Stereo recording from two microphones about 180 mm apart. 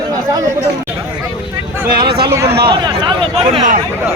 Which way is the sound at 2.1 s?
60° right (ahead or behind).